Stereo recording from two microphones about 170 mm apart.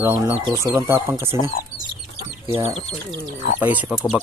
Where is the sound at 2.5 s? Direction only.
15° right (ahead or behind).